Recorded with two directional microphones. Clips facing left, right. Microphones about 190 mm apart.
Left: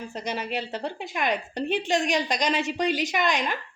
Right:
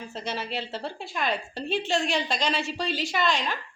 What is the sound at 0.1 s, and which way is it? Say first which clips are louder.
A woman's voice: left 2 dB; 15° left (ahead or behind).